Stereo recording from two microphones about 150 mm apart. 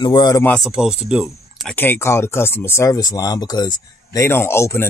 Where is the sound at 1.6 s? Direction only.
15° left (ahead or behind).